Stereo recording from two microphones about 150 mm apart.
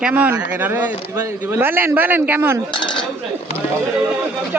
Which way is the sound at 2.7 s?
30° left (ahead or behind).